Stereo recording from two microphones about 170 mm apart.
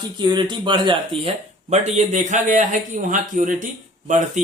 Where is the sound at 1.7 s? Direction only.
45° right (ahead or behind).